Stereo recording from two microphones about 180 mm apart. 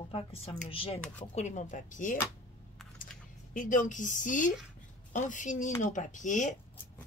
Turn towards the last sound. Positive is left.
turn(degrees=45)  # may be behind; listen again after turning